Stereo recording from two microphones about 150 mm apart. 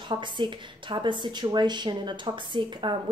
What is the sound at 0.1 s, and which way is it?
A woman's voice, 30° right (ahead or behind).